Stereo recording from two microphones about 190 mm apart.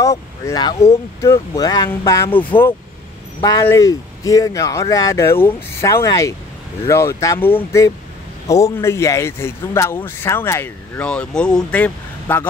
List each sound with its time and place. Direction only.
0.0 s speech: 15° left (ahead or behind)